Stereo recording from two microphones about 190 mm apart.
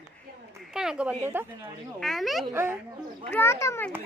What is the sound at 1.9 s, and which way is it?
Speech, centre (ahead or behind).